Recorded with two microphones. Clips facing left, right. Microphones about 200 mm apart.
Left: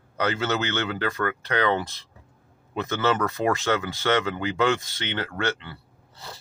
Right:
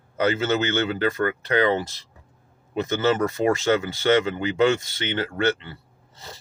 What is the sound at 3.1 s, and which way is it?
Speech, 30° right (ahead or behind).